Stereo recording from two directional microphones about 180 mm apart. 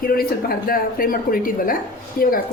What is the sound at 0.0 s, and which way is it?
Speech, 55° left (ahead or behind).